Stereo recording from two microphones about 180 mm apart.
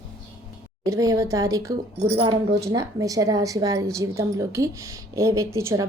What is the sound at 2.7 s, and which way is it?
A woman's voice, 20° right (ahead or behind).